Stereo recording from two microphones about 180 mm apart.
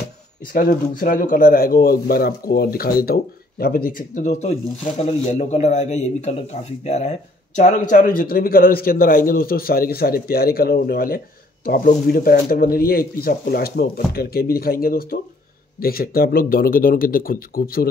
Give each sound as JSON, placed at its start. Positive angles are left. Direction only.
{"t": 0.5, "sound": "a man's voice", "side_deg": 55}
{"t": 7.9, "sound": "a man's voice", "side_deg": 50}